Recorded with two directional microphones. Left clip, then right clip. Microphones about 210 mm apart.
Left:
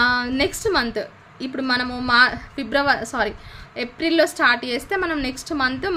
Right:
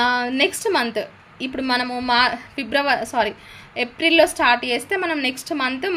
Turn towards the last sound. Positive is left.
turn(degrees=20)  # may be behind; listen again after turning